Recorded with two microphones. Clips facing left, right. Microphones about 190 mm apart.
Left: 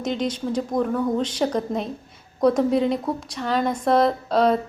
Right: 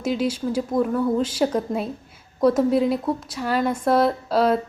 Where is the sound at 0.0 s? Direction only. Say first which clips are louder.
Right 2 dB; 5° right (ahead or behind).